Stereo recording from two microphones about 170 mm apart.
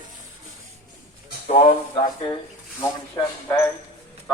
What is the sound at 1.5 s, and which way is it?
Speech, 40° left (ahead or behind).